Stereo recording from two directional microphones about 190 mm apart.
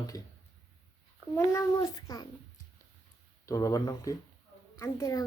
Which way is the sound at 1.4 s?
15° left (ahead or behind).